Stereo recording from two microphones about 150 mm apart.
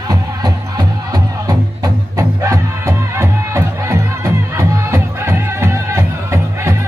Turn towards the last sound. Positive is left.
turn(degrees=-20)  # may be behind; listen again after turning